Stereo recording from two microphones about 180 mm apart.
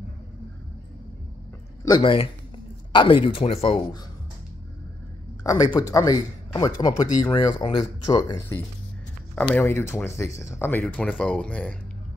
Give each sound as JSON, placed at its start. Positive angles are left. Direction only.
{"t": 1.9, "sound": "speech", "side_deg": 25}
{"t": 5.4, "sound": "speech", "side_deg": 20}